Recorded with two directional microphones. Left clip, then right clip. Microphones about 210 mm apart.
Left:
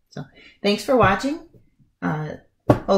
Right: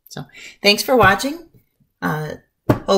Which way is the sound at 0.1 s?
30° right (ahead or behind).